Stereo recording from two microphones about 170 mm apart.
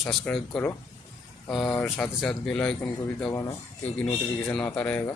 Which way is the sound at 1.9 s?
Centre (ahead or behind).